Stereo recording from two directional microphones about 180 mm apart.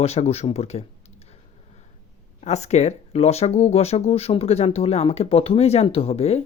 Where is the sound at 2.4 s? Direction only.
40° left (ahead or behind).